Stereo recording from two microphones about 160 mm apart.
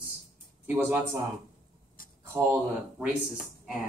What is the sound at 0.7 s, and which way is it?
Speech, 15° right (ahead or behind).